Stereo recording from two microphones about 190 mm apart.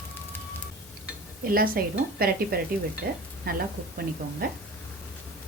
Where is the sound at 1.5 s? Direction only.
50° right (ahead or behind).